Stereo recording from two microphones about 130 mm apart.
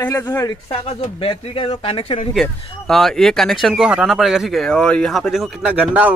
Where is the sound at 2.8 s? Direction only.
5° left (ahead or behind).